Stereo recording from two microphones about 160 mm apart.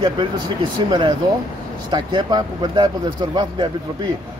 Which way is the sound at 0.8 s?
30° right (ahead or behind).